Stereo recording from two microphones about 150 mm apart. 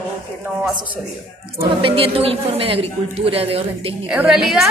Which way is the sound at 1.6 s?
40° right (ahead or behind).